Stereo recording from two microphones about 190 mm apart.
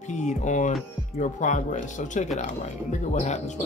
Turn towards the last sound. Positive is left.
turn(degrees=40)  # may be behind; listen again after turning